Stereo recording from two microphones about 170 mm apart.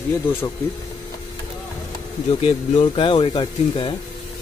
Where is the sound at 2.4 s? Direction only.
35° left (ahead or behind).